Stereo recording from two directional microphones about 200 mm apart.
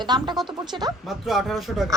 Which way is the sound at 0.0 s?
20° right (ahead or behind).